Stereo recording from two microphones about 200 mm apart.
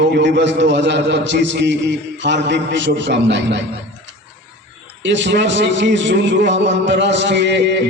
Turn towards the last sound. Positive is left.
turn(degrees=-60)  # may be behind; listen again after turning